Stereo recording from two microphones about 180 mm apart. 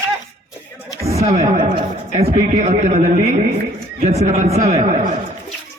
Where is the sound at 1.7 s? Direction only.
35° right (ahead or behind).